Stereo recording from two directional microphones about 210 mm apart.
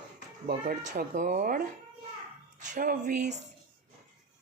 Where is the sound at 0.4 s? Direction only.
40° right (ahead or behind).